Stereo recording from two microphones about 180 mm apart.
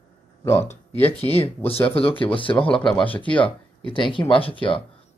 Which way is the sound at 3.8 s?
30° left (ahead or behind).